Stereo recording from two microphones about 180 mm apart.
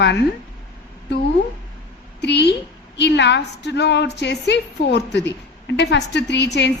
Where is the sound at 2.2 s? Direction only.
70° left (ahead or behind).